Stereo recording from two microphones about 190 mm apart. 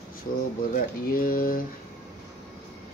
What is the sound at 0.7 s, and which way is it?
Speech, 50° left (ahead or behind).